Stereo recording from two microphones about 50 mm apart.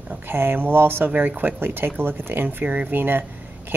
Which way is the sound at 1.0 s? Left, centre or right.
Right.